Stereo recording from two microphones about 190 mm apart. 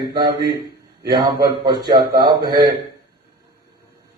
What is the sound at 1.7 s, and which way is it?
Speech, 25° right (ahead or behind).